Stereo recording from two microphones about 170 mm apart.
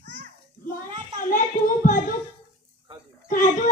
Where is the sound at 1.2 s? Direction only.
50° left (ahead or behind).